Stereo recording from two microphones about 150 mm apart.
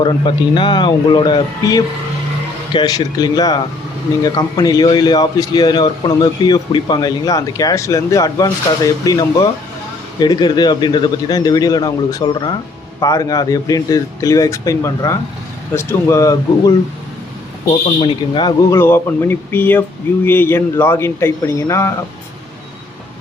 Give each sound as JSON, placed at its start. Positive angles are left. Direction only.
{"t": 0.0, "sound": "a man's voice", "side_deg": 35}
{"t": 18.0, "sound": "speech", "side_deg": 30}
{"t": 18.7, "sound": "speech", "side_deg": 15}